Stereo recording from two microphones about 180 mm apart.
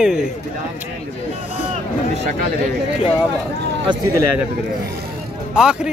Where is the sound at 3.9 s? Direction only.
25° right (ahead or behind).